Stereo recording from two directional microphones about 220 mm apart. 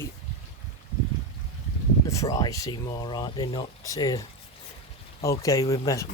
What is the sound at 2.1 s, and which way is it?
Speech, 15° left (ahead or behind).